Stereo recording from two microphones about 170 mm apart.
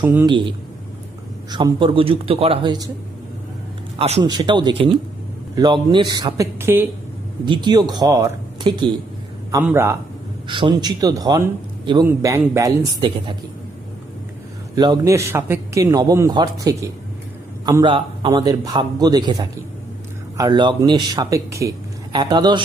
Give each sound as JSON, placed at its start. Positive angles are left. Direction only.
{"t": 0.0, "sound": "a man's voice", "side_deg": -10}
{"t": 0.3, "sound": "speech", "side_deg": -30}
{"t": 3.9, "sound": "a man's voice", "side_deg": -40}
{"t": 4.2, "sound": "speech", "side_deg": -25}
{"t": 7.4, "sound": "speech", "side_deg": -25}
{"t": 9.6, "sound": "a man's voice", "side_deg": -15}
{"t": 10.5, "sound": "speech", "side_deg": -25}
{"t": 14.8, "sound": "speech", "side_deg": -20}